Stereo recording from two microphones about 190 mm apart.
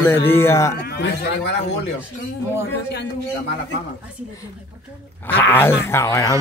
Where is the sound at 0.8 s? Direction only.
60° left (ahead or behind).